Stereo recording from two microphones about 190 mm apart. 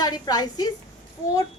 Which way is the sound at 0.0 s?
20° left (ahead or behind).